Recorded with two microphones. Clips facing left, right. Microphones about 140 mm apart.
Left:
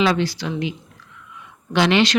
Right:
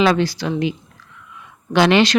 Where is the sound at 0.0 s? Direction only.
45° right (ahead or behind).